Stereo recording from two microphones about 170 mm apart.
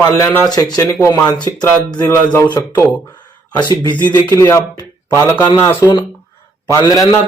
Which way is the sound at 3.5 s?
25° left (ahead or behind).